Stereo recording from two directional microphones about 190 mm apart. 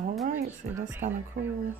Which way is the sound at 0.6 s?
45° right (ahead or behind).